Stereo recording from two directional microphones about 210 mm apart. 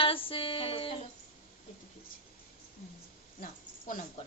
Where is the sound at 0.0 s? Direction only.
25° left (ahead or behind).